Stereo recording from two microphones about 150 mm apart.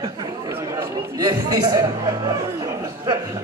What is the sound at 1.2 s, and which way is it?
A man's voice, 25° right (ahead or behind).